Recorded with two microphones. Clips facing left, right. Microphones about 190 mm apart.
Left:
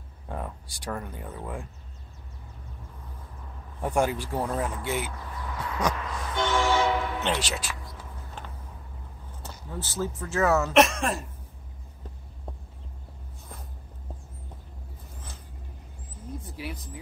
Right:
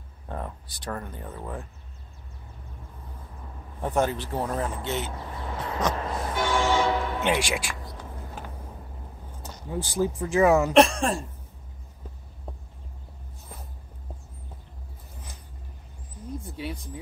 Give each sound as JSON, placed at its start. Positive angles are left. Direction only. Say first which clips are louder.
{"t": 0.3, "sound": "a sound", "louder": "even", "side_deg": 10}
{"t": 0.7, "sound": "speech", "louder": "even", "side_deg": 10}
{"t": 3.8, "sound": "speech", "louder": "even", "side_deg": 10}
{"t": 5.1, "sound": "a sound", "louder": "right 2 dB", "side_deg": -25}
{"t": 5.9, "sound": "vehicle", "louder": "right 4 dB", "side_deg": -40}
{"t": 6.3, "sound": "train horn", "louder": "even", "side_deg": -10}
{"t": 9.4, "sound": "speech", "louder": "right 5 dB", "side_deg": -15}
{"t": 10.7, "sound": "speech", "louder": "right 2 dB", "side_deg": -30}
{"t": 16.5, "sound": "speech", "louder": "right 3 dB", "side_deg": -25}